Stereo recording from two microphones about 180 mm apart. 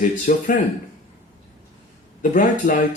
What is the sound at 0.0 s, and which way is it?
Speech, 50° left (ahead or behind).